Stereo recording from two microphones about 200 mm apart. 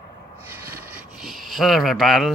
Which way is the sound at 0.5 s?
10° right (ahead or behind).